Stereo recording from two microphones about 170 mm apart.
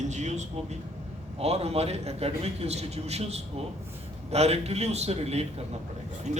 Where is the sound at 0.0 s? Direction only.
45° right (ahead or behind).